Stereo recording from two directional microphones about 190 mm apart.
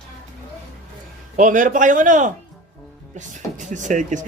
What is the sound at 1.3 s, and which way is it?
A man's voice, 45° right (ahead or behind).